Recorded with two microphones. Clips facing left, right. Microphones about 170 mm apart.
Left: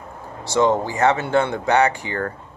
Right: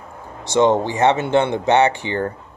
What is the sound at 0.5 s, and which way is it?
Speech, 20° right (ahead or behind).